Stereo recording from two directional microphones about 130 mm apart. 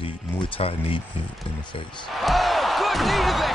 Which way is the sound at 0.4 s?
45° left (ahead or behind).